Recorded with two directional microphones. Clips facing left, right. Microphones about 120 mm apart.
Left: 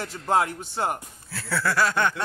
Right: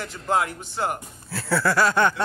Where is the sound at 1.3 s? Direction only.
35° right (ahead or behind).